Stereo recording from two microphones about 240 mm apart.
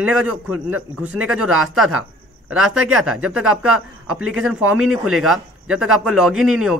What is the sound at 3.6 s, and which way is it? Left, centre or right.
Speech, right.